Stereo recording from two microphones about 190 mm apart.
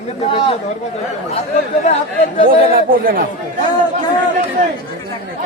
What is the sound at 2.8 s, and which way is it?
Speech, 50° right (ahead or behind).